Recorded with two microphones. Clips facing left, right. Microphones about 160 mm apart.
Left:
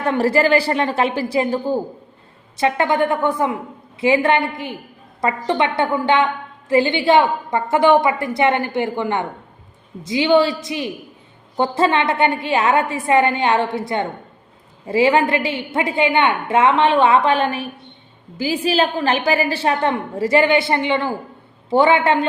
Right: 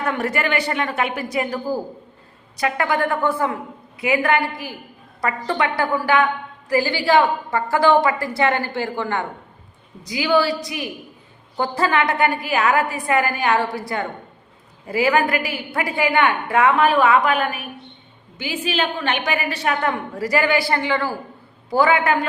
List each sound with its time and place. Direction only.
0.0 s a woman's voice: 30° left (ahead or behind)